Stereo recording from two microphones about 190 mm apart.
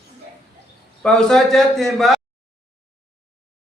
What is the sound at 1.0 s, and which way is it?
A man's voice, 5° left (ahead or behind).